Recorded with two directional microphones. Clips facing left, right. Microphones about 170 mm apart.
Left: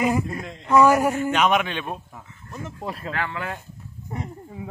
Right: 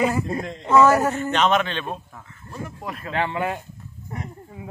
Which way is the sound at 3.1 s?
25° right (ahead or behind).